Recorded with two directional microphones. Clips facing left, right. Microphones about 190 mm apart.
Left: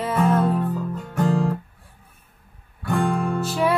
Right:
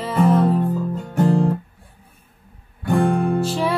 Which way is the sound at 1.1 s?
20° right (ahead or behind).